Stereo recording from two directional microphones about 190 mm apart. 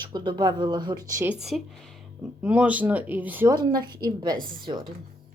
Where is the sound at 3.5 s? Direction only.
20° right (ahead or behind).